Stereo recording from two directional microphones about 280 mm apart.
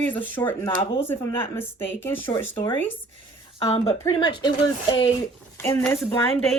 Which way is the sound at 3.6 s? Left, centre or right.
Left.